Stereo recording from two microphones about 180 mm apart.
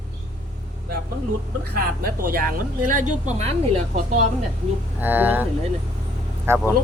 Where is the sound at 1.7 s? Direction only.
55° right (ahead or behind).